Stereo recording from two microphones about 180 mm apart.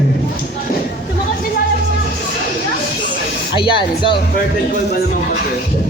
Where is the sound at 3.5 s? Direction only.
30° left (ahead or behind).